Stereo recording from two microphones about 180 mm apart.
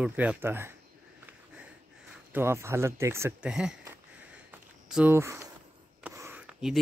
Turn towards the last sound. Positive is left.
turn(degrees=-5)  # may be behind; listen again after turning